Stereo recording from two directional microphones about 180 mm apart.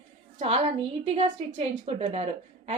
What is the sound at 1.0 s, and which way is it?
A woman's voice, 30° right (ahead or behind).